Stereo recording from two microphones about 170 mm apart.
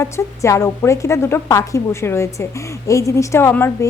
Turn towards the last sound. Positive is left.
turn(degrees=15)  # may be behind; listen again after turning